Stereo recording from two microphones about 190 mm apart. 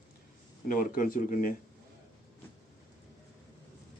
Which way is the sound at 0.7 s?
45° left (ahead or behind).